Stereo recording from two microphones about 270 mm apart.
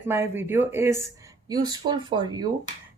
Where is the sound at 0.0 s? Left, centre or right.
Centre.